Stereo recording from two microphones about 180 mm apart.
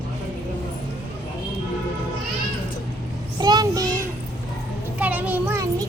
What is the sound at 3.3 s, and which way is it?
Child singing, 25° right (ahead or behind).